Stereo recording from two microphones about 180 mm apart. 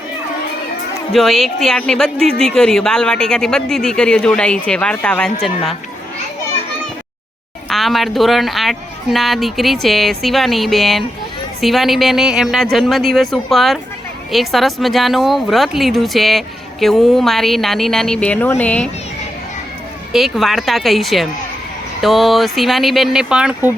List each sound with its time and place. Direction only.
1.1 s a woman's voice: centre (ahead or behind)
7.7 s a woman's voice: centre (ahead or behind)
20.1 s a woman's voice: centre (ahead or behind)